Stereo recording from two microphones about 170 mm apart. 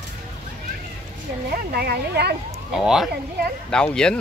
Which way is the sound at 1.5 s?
65° right (ahead or behind).